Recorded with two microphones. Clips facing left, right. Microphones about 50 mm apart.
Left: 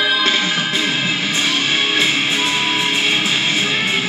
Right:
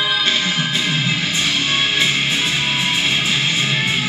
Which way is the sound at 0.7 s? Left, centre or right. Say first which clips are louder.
Left 1 dB; left.